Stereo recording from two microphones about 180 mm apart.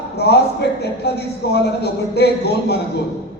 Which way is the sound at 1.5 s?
65° left (ahead or behind).